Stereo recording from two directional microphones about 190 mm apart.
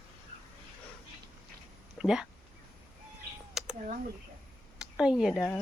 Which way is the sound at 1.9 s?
5° right (ahead or behind).